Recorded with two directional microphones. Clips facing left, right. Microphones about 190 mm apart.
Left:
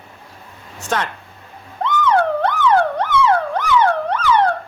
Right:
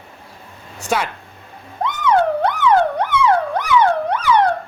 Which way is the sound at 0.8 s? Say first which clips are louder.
Right 1 dB; 10° right (ahead or behind).